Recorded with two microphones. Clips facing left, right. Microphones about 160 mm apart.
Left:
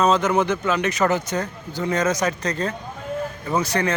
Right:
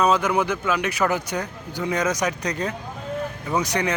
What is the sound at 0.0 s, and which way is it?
Speech, 10° right (ahead or behind).